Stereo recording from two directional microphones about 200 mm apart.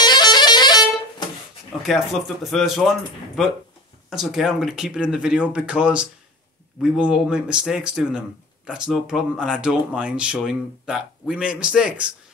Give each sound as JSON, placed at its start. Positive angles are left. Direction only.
{"t": 0.0, "sound": "music", "side_deg": 20}
{"t": 1.8, "sound": "speech", "side_deg": 0}